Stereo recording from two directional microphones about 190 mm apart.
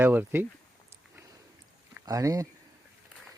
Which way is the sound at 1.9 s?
15° right (ahead or behind).